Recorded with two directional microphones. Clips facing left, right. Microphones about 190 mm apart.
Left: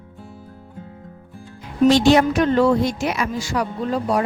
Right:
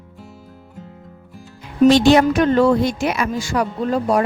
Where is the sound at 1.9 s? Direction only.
70° right (ahead or behind).